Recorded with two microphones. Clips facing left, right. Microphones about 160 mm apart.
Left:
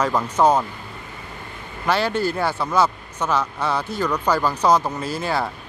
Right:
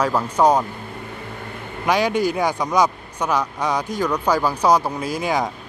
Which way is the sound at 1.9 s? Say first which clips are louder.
Right 2 dB; 15° right (ahead or behind).